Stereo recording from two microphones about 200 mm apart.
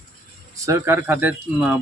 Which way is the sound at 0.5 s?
15° right (ahead or behind).